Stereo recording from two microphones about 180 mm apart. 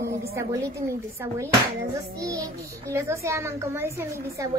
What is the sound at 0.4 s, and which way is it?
A woman's voice, 15° right (ahead or behind).